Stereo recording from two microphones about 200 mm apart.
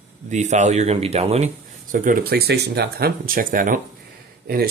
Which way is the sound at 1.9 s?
45° right (ahead or behind).